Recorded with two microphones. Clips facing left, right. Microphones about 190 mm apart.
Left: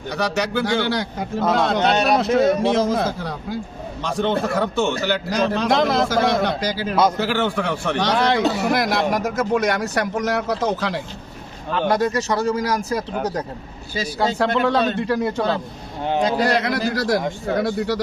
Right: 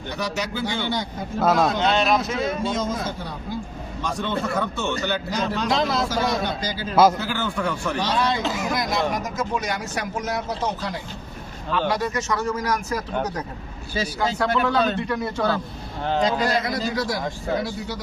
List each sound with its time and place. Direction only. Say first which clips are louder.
0.2 s speech: left 6 dB; 70° left (ahead or behind)
2.3 s a man's voice: left 9 dB; 40° left (ahead or behind)
2.6 s a man's voice: left 7 dB; 75° left (ahead or behind)
5.5 s speech: left 4 dB; 55° left (ahead or behind); by 10.9 s 80° left
12.1 s a man's voice: left 4 dB; 35° left (ahead or behind)
14.2 s a man's voice: left 4 dB; 30° left (ahead or behind)
16.2 s speech: left 3 dB; 70° left (ahead or behind)